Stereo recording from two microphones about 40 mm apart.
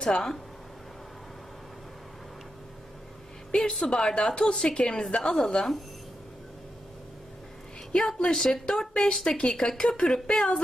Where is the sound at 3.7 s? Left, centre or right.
Centre.